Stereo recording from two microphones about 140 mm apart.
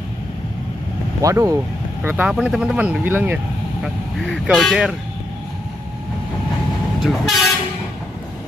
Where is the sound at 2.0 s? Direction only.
10° right (ahead or behind).